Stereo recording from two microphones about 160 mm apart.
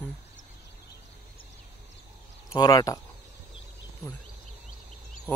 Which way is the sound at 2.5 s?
25° left (ahead or behind).